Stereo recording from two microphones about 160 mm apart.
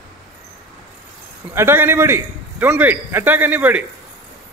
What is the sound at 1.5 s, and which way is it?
A man's voice, 15° right (ahead or behind).